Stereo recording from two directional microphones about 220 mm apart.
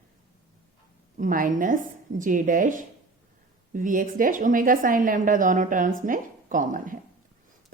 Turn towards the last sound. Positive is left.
turn(degrees=-35)  # may be behind; listen again after turning